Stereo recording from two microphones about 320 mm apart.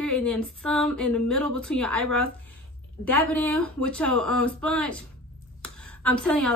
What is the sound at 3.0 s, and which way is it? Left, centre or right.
A woman's voice, centre.